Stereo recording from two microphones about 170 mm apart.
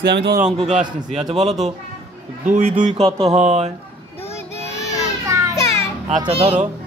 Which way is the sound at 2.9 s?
35° right (ahead or behind).